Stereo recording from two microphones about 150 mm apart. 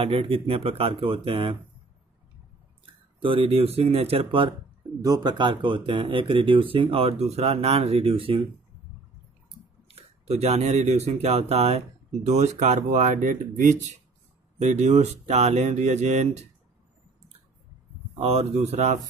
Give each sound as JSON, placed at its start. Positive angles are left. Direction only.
{"t": 0.0, "sound": "speech", "side_deg": -40}
{"t": 2.8, "sound": "speech", "side_deg": -35}
{"t": 9.8, "sound": "speech", "side_deg": -45}
{"t": 18.2, "sound": "speech", "side_deg": -45}